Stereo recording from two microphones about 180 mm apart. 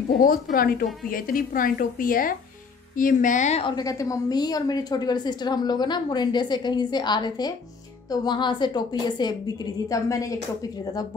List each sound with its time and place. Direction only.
0.2 s a woman's voice: 50° left (ahead or behind)
3.6 s a woman's voice: 20° left (ahead or behind)